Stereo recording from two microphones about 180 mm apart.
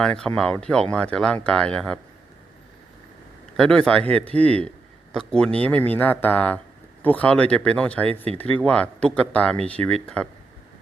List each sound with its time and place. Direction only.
0.0 s speech: 5° left (ahead or behind)
3.6 s speech: 5° left (ahead or behind)
8.1 s speech: 35° right (ahead or behind)
8.4 s speech: 5° left (ahead or behind)